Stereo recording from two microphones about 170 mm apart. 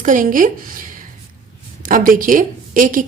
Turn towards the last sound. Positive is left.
turn(degrees=-50)  # may be behind; listen again after turning